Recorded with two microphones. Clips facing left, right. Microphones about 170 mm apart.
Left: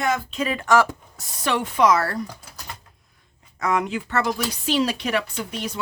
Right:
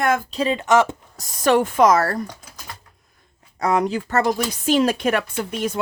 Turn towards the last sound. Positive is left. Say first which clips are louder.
# right 5 dB
turn(degrees=-50)  # may be behind; listen again after turning